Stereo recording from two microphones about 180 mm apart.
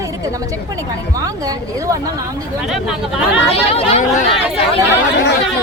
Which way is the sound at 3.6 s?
35° left (ahead or behind).